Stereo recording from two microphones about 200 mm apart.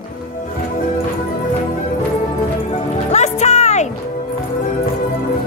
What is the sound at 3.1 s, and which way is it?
Music, 35° left (ahead or behind).